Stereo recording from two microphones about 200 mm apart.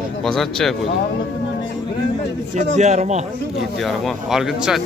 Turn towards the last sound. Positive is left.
turn(degrees=0)  # may be behind; listen again after turning